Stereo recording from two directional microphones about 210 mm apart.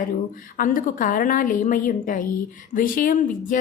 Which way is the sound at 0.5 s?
40° left (ahead or behind).